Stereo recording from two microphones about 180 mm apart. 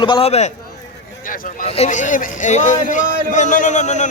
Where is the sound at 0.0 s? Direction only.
30° left (ahead or behind).